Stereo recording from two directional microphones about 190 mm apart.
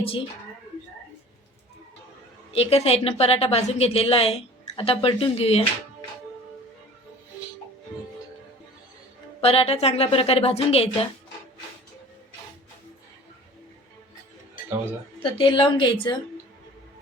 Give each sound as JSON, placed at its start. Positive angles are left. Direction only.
{"t": 0.0, "sound": "a woman's voice", "side_deg": 30}
{"t": 2.5, "sound": "a woman's voice", "side_deg": 30}
{"t": 9.4, "sound": "a woman's voice", "side_deg": 30}
{"t": 15.2, "sound": "a woman's voice", "side_deg": 25}